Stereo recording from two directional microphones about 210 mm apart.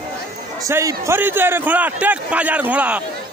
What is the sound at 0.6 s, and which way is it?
A man's voice, 15° right (ahead or behind).